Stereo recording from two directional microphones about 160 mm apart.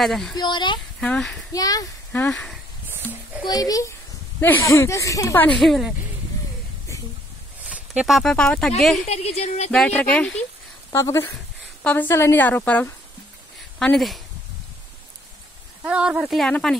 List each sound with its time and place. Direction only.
0.0 s speech: centre (ahead or behind)
0.4 s speech: 30° left (ahead or behind)
1.0 s speech: 5° left (ahead or behind)
1.5 s speech: 20° left (ahead or behind)
2.3 s speech: 5° left (ahead or behind)
3.4 s speech: 25° left (ahead or behind); by 5.9 s centre (ahead or behind)
7.7 s speech: 5° right (ahead or behind)
9.0 s speech: 40° left (ahead or behind)
9.7 s speech: 5° left (ahead or behind)
10.9 s speech: 15° left (ahead or behind); by 14.2 s centre (ahead or behind)
15.8 s speech: 5° right (ahead or behind)